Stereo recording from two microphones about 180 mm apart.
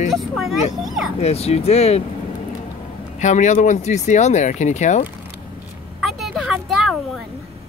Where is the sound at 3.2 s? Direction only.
40° left (ahead or behind).